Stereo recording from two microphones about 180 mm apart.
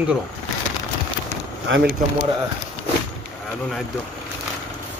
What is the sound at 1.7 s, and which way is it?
Speech, 90° right.